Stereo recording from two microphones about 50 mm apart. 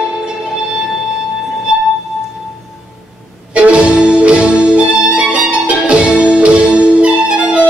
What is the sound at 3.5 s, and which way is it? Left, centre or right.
Music, right.